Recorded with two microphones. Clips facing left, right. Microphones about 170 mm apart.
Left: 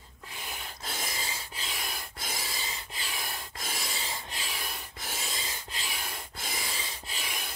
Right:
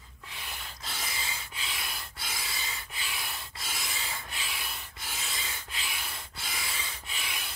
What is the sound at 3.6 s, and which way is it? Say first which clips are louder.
Rub: left 2 dB; 40° left (ahead or behind).